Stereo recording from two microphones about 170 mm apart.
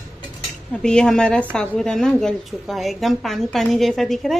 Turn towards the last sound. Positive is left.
turn(degrees=0)  # may be behind; listen again after turning